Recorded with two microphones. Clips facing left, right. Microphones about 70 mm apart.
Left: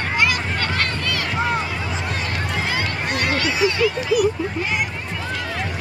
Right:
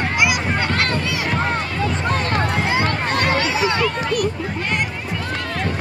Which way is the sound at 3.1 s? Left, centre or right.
Right.